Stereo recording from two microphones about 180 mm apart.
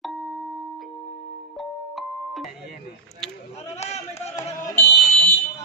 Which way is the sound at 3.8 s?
40° left (ahead or behind).